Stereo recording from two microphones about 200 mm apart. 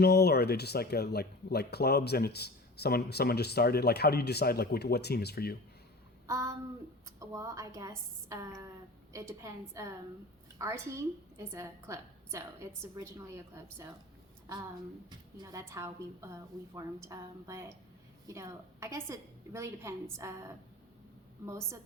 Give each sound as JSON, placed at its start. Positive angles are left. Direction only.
{"t": 0.0, "sound": "speech", "side_deg": 50}
{"t": 6.2, "sound": "child singing", "side_deg": -15}
{"t": 7.2, "sound": "a woman's voice", "side_deg": -15}
{"t": 15.4, "sound": "a woman's voice", "side_deg": -15}
{"t": 21.4, "sound": "a woman's voice", "side_deg": -15}